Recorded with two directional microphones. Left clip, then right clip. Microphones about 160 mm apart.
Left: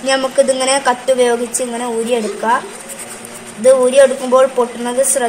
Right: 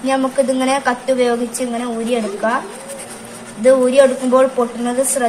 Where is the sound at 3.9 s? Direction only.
40° left (ahead or behind).